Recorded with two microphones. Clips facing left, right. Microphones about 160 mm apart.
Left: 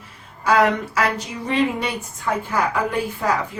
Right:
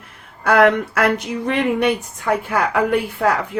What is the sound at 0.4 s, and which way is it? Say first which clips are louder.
Speech: right 3 dB; 60° right (ahead or behind).